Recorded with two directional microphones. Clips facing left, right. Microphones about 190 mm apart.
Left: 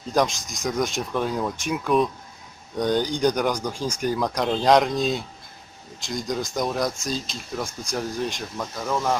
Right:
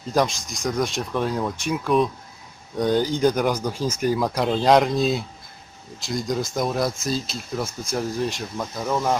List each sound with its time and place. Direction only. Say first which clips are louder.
0.1 s speech: right 1 dB; centre (ahead or behind)